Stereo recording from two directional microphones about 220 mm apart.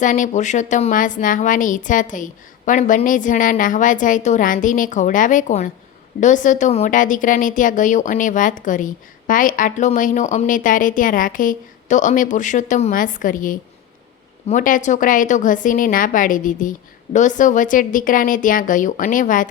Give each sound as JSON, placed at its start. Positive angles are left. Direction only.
{"t": 0.0, "sound": "speech", "side_deg": 35}